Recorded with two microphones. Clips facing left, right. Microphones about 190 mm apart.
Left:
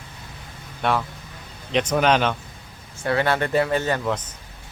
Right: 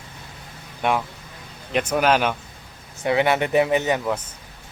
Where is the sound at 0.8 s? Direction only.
10° right (ahead or behind).